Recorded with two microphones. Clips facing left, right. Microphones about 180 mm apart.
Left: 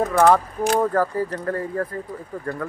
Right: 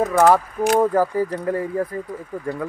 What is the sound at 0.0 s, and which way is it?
Speech, 5° right (ahead or behind).